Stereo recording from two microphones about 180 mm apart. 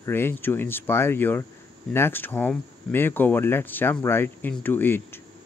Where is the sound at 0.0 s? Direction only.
15° left (ahead or behind).